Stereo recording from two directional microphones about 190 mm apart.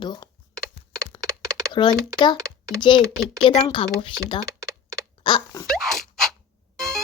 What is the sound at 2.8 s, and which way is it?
A woman's voice, 25° left (ahead or behind).